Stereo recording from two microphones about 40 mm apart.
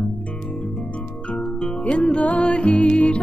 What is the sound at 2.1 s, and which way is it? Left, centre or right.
Music, left.